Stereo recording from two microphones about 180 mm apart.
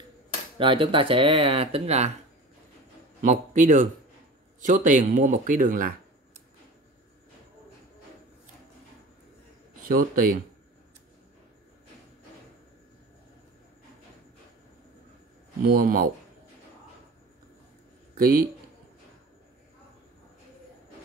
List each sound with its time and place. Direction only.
0.6 s speech: 30° right (ahead or behind)
3.2 s a man's voice: 45° right (ahead or behind)
9.8 s speech: 55° right (ahead or behind)
15.6 s speech: 55° right (ahead or behind)
18.1 s a sound: 50° right (ahead or behind)